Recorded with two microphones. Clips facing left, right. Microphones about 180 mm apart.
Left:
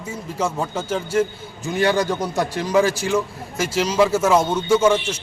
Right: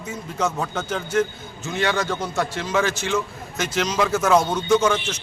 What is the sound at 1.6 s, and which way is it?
A man's voice, 10° left (ahead or behind).